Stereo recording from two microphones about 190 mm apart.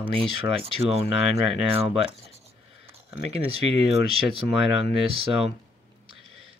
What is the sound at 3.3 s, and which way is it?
Speech, 30° right (ahead or behind).